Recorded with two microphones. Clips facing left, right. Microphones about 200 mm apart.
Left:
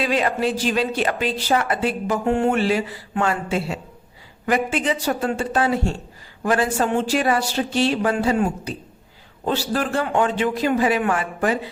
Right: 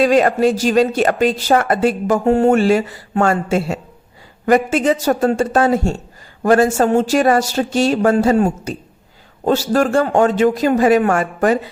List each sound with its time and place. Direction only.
0.0 s speech: 45° right (ahead or behind)